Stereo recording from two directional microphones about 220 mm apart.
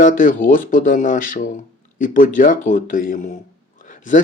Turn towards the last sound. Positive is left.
turn(degrees=35)  # may be behind; listen again after turning